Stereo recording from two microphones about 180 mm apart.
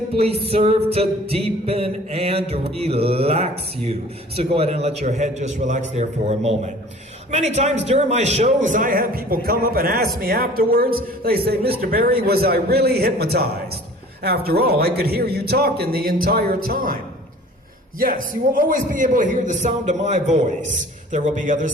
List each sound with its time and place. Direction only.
0.2 s music: 35° right (ahead or behind); by 10.1 s 55° right (ahead or behind)
10.2 s a man's voice: 55° right (ahead or behind)
18.5 s a man's voice: 50° right (ahead or behind)